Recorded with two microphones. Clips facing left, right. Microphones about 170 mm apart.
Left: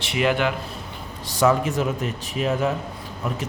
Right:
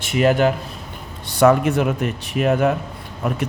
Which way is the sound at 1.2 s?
60° right (ahead or behind).